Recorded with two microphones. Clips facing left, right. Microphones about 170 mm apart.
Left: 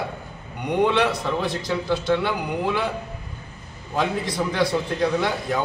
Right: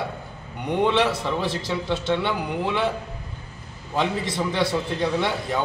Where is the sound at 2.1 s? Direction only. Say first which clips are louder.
Left 1 dB; centre (ahead or behind).